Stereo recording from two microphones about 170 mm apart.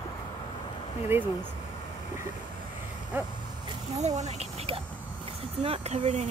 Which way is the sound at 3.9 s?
40° right (ahead or behind).